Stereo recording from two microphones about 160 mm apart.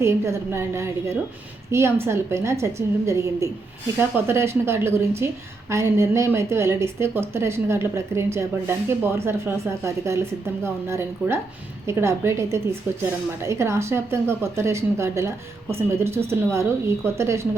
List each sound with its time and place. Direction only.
0.0 s a woman's voice: 15° right (ahead or behind)